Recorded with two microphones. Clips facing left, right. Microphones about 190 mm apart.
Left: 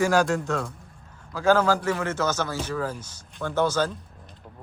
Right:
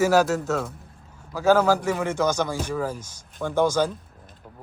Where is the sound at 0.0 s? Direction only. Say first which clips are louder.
Right 2 dB; 5° right (ahead or behind).